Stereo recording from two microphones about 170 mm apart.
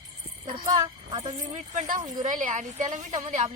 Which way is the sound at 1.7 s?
45° right (ahead or behind).